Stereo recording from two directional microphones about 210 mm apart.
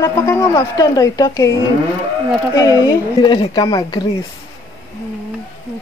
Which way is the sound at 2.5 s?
15° left (ahead or behind).